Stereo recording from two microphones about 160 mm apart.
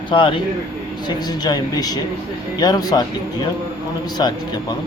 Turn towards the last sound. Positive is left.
turn(degrees=25)  # may be behind; listen again after turning